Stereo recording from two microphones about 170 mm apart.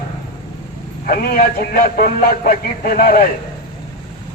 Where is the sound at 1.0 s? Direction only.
60° left (ahead or behind).